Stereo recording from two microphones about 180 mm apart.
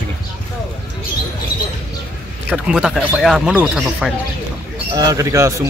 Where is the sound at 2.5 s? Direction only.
5° right (ahead or behind).